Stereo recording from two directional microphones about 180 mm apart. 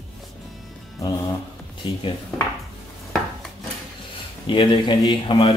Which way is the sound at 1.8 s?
25° left (ahead or behind).